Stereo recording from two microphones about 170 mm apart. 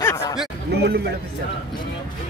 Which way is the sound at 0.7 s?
75° right (ahead or behind).